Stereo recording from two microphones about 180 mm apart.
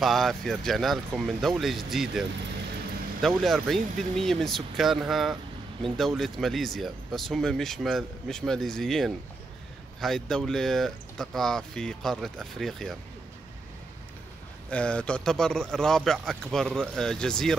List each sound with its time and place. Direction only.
0.0 s speech: centre (ahead or behind)
14.7 s speech: 5° left (ahead or behind)